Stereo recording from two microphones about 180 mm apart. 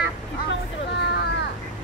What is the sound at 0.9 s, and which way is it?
Vehicle, 65° left (ahead or behind).